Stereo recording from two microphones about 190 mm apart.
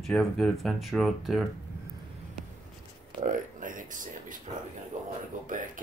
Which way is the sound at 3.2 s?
45° right (ahead or behind).